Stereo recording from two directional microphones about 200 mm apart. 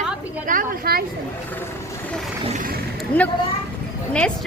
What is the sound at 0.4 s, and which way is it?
Speech, 45° right (ahead or behind).